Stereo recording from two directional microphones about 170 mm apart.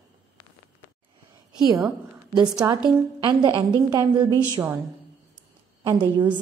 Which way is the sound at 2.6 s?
20° right (ahead or behind).